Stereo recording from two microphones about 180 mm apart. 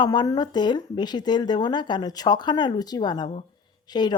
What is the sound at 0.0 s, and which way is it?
Speech, 20° left (ahead or behind).